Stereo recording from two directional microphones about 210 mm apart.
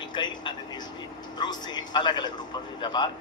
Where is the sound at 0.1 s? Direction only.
20° left (ahead or behind).